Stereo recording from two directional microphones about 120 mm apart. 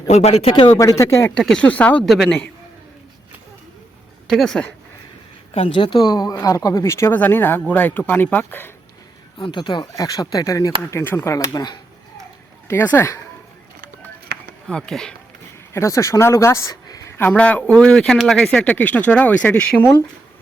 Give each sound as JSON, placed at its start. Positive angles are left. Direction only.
{"t": 0.1, "sound": "speech", "side_deg": 65}
{"t": 0.8, "sound": "speech", "side_deg": 25}
{"t": 1.4, "sound": "speech", "side_deg": 5}
{"t": 2.0, "sound": "speech", "side_deg": 0}
{"t": 4.3, "sound": "speech", "side_deg": 0}
{"t": 5.5, "sound": "speech", "side_deg": 50}
{"t": 9.4, "sound": "speech", "side_deg": 40}
{"t": 9.9, "sound": "speech", "side_deg": 30}
{"t": 12.6, "sound": "speech", "side_deg": 20}
{"t": 14.7, "sound": "speech", "side_deg": 5}
{"t": 15.7, "sound": "speech", "side_deg": 25}